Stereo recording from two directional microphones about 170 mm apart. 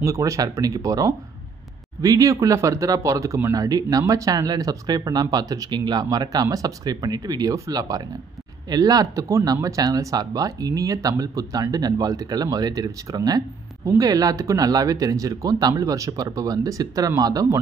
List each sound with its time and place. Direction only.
0.0 s speech: 20° right (ahead or behind)